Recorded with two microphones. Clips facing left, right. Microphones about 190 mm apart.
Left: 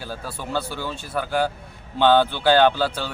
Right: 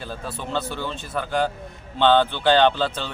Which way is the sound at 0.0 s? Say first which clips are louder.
Even; 5° left (ahead or behind).